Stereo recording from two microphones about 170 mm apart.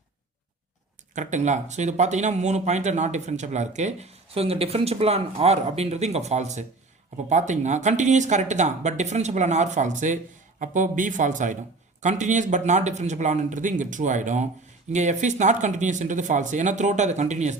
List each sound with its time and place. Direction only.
1.1 s speech: 45° right (ahead or behind)